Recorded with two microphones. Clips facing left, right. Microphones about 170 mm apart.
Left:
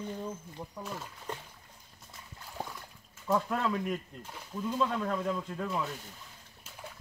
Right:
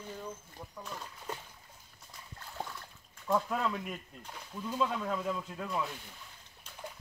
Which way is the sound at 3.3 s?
Centre (ahead or behind).